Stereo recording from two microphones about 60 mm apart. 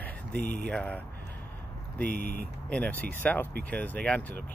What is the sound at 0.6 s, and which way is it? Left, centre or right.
Speech, centre.